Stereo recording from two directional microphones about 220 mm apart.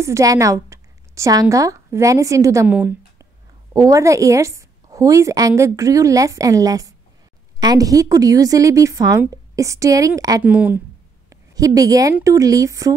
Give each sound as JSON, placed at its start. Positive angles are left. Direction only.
{"t": 0.0, "sound": "a woman's voice", "side_deg": -15}